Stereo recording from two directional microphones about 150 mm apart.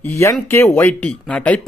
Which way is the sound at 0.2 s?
15° left (ahead or behind).